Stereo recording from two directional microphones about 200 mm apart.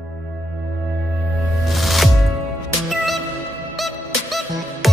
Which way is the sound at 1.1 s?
Centre (ahead or behind).